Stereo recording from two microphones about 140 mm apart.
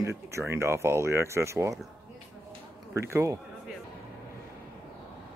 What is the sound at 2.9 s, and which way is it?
Speech, 20° right (ahead or behind).